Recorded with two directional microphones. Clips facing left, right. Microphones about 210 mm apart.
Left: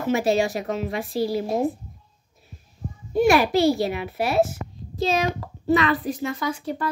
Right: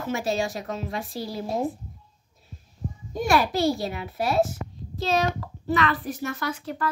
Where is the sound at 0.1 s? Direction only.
70° left (ahead or behind).